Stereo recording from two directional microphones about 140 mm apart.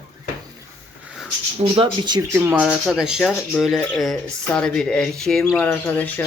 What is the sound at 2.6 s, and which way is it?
Speech, centre (ahead or behind).